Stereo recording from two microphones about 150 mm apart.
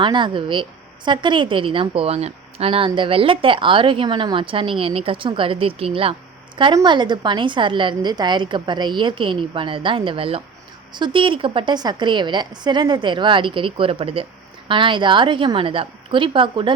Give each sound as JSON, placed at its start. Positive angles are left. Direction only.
{"t": 0.0, "sound": "a woman's voice", "side_deg": -30}